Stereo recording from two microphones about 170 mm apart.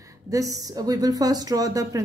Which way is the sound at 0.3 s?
20° right (ahead or behind).